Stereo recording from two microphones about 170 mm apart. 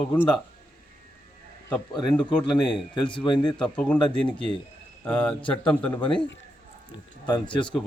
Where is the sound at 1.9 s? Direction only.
25° left (ahead or behind).